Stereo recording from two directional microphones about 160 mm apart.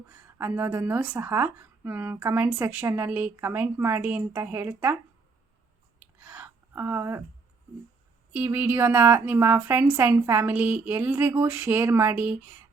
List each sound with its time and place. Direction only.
0.1 s speech: 15° right (ahead or behind)
6.0 s a sound: 10° right (ahead or behind)
8.3 s speech: 10° right (ahead or behind)